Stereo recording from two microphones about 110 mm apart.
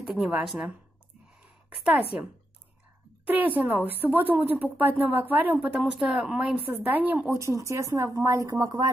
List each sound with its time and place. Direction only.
0.0 s speech: 10° right (ahead or behind)
3.3 s speech: 15° right (ahead or behind)
5.8 s speech: 5° right (ahead or behind)
7.3 s speech: 25° right (ahead or behind)